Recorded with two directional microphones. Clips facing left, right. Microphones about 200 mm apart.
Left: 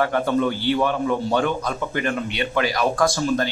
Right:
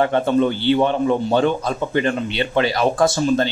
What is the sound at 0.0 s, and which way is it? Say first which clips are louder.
A man's voice: right 4 dB; 25° right (ahead or behind).